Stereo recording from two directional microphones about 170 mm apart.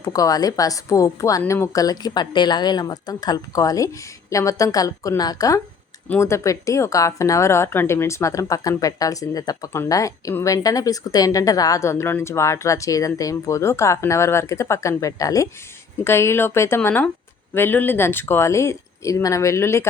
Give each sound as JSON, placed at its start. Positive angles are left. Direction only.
{"t": 0.0, "sound": "a woman's voice", "side_deg": 20}